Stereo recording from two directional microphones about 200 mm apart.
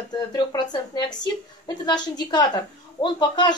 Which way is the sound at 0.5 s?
20° left (ahead or behind).